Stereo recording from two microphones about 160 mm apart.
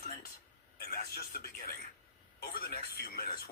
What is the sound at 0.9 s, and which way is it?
Speech, 75° left (ahead or behind).